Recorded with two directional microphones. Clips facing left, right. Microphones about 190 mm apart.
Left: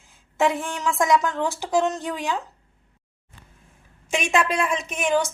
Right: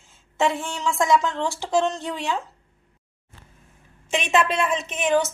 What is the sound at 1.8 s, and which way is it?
Speech, centre (ahead or behind).